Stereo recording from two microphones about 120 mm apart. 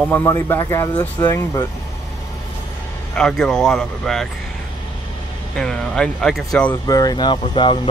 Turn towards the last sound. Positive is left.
turn(degrees=45)  # may be behind; listen again after turning